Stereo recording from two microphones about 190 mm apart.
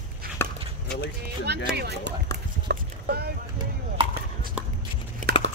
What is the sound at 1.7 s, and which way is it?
Speech, 60° right (ahead or behind).